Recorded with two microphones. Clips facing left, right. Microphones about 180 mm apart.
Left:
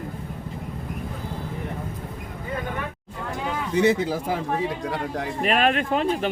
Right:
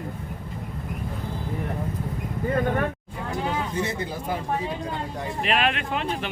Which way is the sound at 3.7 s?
90° left.